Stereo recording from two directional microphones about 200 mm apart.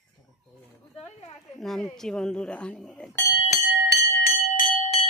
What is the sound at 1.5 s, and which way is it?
Speech, centre (ahead or behind).